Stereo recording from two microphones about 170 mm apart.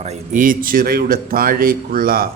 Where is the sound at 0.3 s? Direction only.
55° right (ahead or behind).